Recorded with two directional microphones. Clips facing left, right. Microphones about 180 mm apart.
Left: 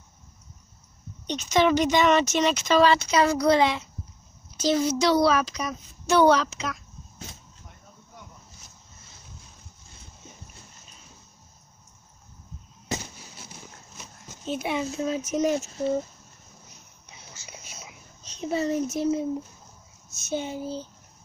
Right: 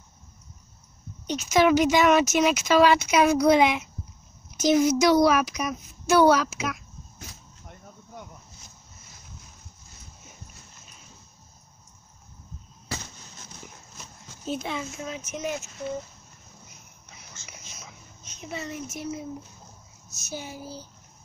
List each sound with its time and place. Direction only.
1.2 s speech: 5° right (ahead or behind)
12.9 s fireworks: 20° left (ahead or behind)
14.6 s a child's voice: 15° left (ahead or behind)
14.9 s speech: 35° left (ahead or behind)
17.5 s a sound: 30° left (ahead or behind)
18.2 s speech: 35° left (ahead or behind)
20.2 s child singing: 25° left (ahead or behind)